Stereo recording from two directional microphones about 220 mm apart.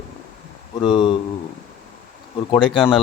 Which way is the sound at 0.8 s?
20° left (ahead or behind).